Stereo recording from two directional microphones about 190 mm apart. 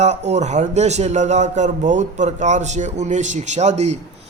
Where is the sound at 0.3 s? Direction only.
35° right (ahead or behind).